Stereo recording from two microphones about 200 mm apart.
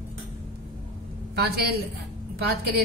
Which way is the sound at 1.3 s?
50° right (ahead or behind).